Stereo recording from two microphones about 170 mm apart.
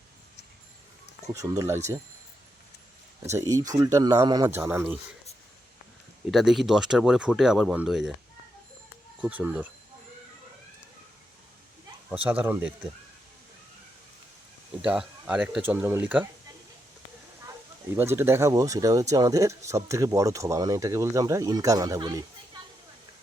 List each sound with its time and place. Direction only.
1.3 s speech: 20° right (ahead or behind)
3.2 s speech: 15° right (ahead or behind)
6.3 s speech: centre (ahead or behind)
9.2 s speech: 10° right (ahead or behind)
12.1 s speech: 10° right (ahead or behind)
14.8 s speech: 5° right (ahead or behind)
17.9 s speech: 15° right (ahead or behind)